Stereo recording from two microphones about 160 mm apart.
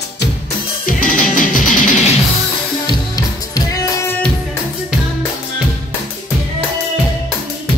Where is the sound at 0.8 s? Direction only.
60° left (ahead or behind).